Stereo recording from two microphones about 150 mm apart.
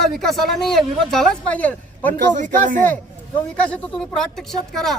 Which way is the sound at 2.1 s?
55° right (ahead or behind).